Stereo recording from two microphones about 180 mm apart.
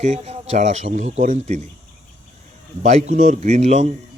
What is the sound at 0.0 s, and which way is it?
Speech, 40° right (ahead or behind).